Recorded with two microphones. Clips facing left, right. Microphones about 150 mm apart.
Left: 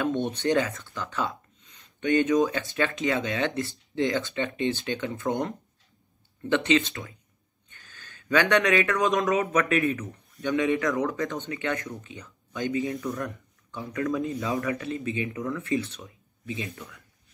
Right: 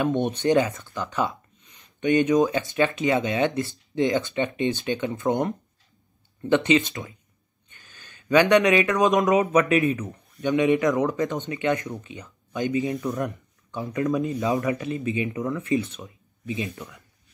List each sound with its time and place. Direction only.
0.0 s speech: 20° right (ahead or behind)
6.5 s speech: 15° right (ahead or behind)